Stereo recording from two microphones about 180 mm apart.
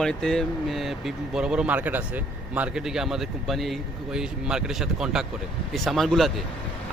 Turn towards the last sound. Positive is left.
turn(degrees=0)  # may be behind; listen again after turning